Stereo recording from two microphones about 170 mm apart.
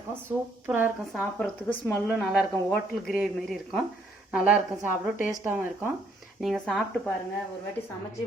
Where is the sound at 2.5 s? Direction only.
10° left (ahead or behind).